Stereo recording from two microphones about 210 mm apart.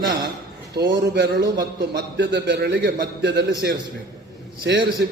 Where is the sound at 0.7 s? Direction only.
55° right (ahead or behind).